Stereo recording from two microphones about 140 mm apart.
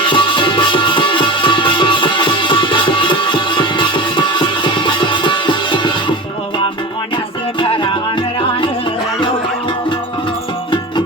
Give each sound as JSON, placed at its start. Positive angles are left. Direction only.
{"t": 0.1, "sound": "music", "side_deg": 35}